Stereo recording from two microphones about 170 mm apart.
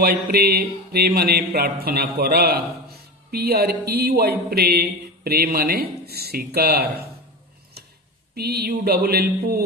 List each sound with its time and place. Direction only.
0.0 s speech: 65° right (ahead or behind)
8.4 s mantra: 65° right (ahead or behind)